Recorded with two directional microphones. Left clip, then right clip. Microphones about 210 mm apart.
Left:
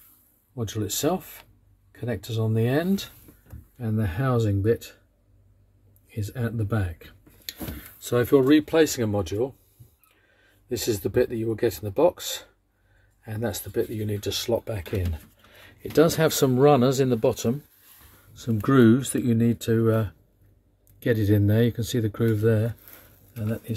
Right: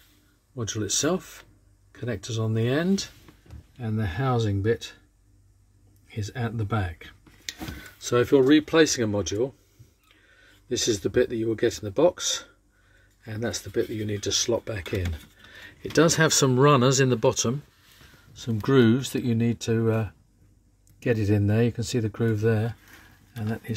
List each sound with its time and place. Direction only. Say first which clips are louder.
0.6 s speech: right 2 dB; 5° right (ahead or behind)
6.0 s speech: even; 15° right (ahead or behind)
10.7 s speech: right 1 dB; 5° right (ahead or behind); by 23.7 s 25° right (ahead or behind)